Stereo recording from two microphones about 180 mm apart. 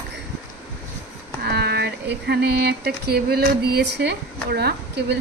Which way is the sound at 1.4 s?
65° right (ahead or behind).